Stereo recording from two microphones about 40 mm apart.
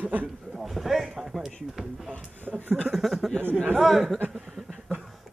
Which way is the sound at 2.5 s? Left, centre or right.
Right.